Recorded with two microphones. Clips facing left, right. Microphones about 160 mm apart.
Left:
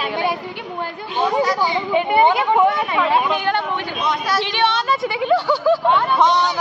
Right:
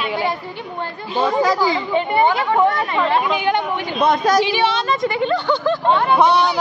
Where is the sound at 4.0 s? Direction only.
50° right (ahead or behind).